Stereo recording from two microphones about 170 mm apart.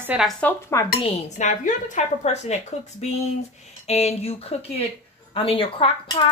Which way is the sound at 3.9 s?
40° left (ahead or behind).